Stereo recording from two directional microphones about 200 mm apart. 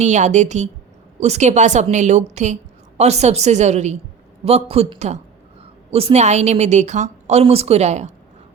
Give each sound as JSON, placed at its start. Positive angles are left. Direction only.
{"t": 0.0, "sound": "a woman's voice", "side_deg": -35}